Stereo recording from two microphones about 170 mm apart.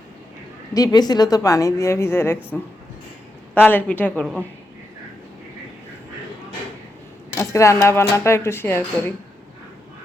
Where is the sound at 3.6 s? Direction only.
10° left (ahead or behind).